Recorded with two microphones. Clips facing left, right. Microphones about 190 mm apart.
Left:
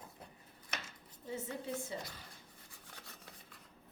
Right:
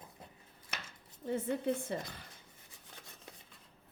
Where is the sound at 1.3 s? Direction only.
60° right (ahead or behind).